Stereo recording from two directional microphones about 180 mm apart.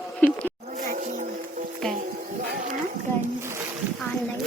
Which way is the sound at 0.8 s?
45° right (ahead or behind).